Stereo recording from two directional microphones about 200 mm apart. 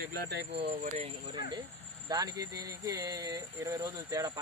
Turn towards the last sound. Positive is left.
turn(degrees=-15)  # may be behind; listen again after turning